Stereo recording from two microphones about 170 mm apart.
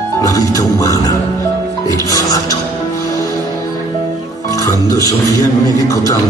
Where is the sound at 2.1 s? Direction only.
20° left (ahead or behind).